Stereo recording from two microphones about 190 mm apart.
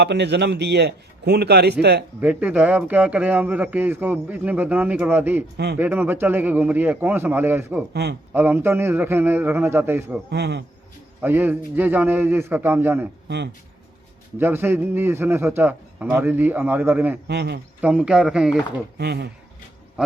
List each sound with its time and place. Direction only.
0.0 s a man's voice: 65° right (ahead or behind)
2.2 s speech: 10° right (ahead or behind)
10.2 s a man's voice: 60° right (ahead or behind)
11.2 s speech: 10° right (ahead or behind)
13.2 s speech: 65° right (ahead or behind)
14.3 s speech: 10° right (ahead or behind)
17.2 s a man's voice: 60° right (ahead or behind)
17.7 s a man's voice: 5° right (ahead or behind)
18.9 s a man's voice: 60° right (ahead or behind)